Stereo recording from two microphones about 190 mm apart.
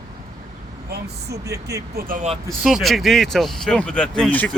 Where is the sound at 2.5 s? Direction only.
Centre (ahead or behind).